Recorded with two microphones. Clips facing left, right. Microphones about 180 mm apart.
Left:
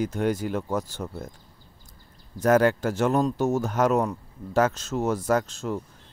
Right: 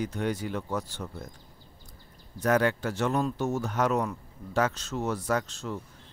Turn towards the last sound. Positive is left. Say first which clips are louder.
# left 5 dB
turn(degrees=45)  # may be behind; listen again after turning